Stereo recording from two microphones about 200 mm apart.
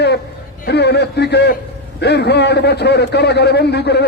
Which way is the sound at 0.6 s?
55° left (ahead or behind).